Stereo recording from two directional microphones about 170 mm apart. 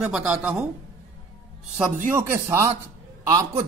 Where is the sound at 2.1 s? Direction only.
15° right (ahead or behind).